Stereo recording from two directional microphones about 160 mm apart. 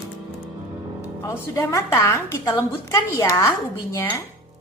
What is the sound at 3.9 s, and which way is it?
Dishes, 15° left (ahead or behind).